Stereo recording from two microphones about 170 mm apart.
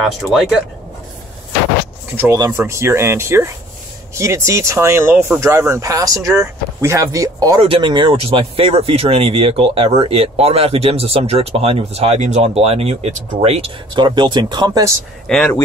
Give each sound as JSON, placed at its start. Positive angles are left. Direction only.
{"t": 0.0, "sound": "speech", "side_deg": 0}
{"t": 2.1, "sound": "speech", "side_deg": -20}
{"t": 15.2, "sound": "speech", "side_deg": 10}